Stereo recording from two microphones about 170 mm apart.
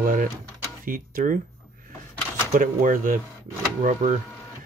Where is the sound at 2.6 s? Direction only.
50° right (ahead or behind).